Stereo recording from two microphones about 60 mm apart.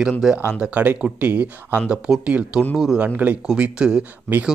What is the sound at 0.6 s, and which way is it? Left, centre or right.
Speech, right.